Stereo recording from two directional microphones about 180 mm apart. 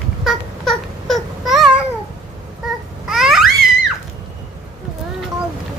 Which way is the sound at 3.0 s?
Centre (ahead or behind).